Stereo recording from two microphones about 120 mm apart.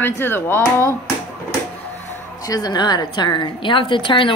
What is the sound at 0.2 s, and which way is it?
Speech, 20° left (ahead or behind).